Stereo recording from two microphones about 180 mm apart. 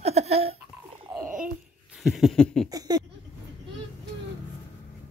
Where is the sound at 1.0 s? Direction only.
10° right (ahead or behind).